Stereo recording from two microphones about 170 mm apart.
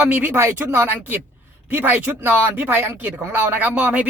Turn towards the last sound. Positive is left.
turn(degrees=-10)  # may be behind; listen again after turning